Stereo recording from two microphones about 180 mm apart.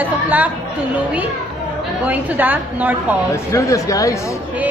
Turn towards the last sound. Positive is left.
turn(degrees=20)  # may be behind; listen again after turning